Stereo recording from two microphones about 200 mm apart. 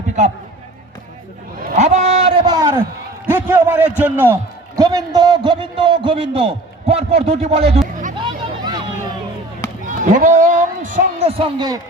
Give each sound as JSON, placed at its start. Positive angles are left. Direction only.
{"t": 1.8, "sound": "speech", "side_deg": -35}
{"t": 2.5, "sound": "a man's voice", "side_deg": -15}
{"t": 8.2, "sound": "vehicle", "side_deg": -20}
{"t": 9.8, "sound": "a man's voice", "side_deg": -40}